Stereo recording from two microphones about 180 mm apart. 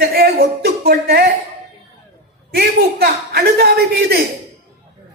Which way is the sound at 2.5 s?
60° right (ahead or behind).